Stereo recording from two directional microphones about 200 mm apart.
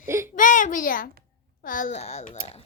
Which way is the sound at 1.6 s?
40° left (ahead or behind).